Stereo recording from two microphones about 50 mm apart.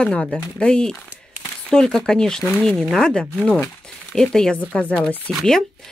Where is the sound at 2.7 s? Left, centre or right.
Centre.